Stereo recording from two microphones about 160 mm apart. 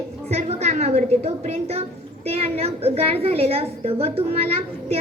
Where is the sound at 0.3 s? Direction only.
40° right (ahead or behind).